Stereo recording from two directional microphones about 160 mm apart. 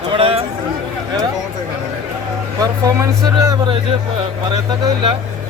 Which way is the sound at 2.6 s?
20° right (ahead or behind).